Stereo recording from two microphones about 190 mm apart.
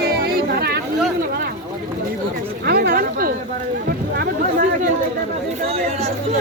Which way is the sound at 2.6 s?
55° right (ahead or behind).